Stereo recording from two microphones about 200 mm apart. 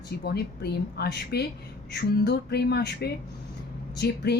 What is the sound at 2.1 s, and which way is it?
Music, 55° left (ahead or behind).